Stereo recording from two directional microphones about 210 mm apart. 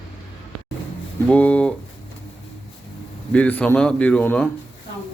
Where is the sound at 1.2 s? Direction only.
5° left (ahead or behind).